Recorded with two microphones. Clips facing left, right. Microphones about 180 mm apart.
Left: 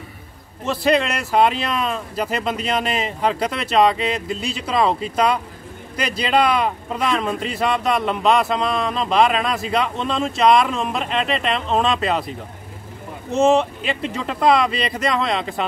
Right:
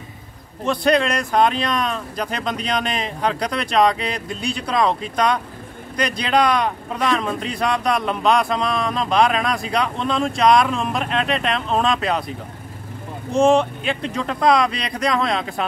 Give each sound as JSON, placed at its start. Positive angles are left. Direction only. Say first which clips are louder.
{"t": 0.7, "sound": "speech", "louder": "right 1 dB", "side_deg": 5}
{"t": 13.3, "sound": "speech", "louder": "right 1 dB", "side_deg": 0}